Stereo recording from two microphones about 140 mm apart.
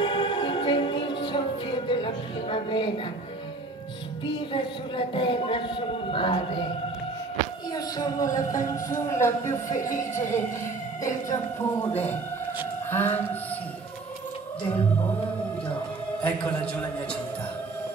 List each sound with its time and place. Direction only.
0.0 s music: 35° left (ahead or behind)
4.3 s speech: 35° left (ahead or behind)
7.7 s speech: 25° left (ahead or behind)
12.9 s a man's voice: 15° left (ahead or behind)
16.2 s a man's voice: 10° left (ahead or behind)